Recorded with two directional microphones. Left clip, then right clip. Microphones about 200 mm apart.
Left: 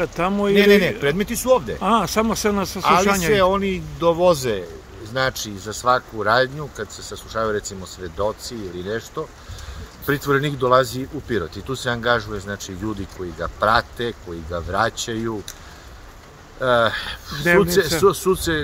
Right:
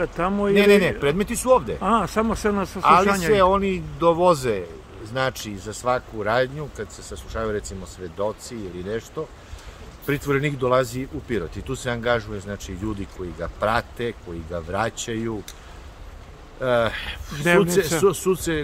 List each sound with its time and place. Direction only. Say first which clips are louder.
0.0 s speech: left 2 dB; 15° left (ahead or behind)
0.6 s speech: left 1 dB; centre (ahead or behind)
1.8 s speech: left 2 dB; 15° left (ahead or behind)
3.3 s speech: even; centre (ahead or behind)
16.5 s speech: left 4 dB; centre (ahead or behind)